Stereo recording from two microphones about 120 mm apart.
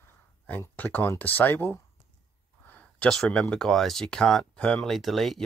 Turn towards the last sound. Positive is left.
turn(degrees=0)  # may be behind; listen again after turning